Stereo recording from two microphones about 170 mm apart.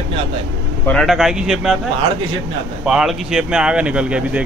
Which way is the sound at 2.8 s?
5° right (ahead or behind).